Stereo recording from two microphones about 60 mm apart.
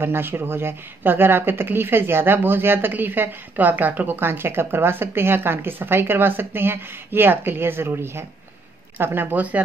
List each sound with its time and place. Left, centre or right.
0.0 s speech: right